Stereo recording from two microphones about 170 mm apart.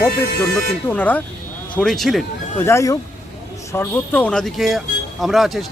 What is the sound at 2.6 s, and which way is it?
Speech, 15° left (ahead or behind).